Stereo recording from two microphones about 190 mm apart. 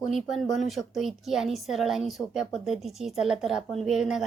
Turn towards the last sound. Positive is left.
turn(degrees=-5)  # may be behind; listen again after turning